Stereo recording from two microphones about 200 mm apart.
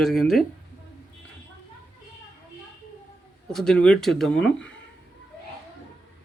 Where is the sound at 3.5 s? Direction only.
5° left (ahead or behind).